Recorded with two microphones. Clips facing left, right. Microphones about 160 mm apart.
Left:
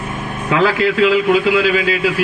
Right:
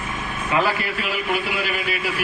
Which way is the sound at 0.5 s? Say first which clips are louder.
Left 8 dB; 90° left.